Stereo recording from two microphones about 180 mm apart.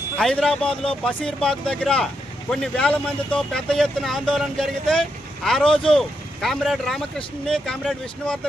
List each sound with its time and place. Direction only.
0.2 s speech: 5° left (ahead or behind)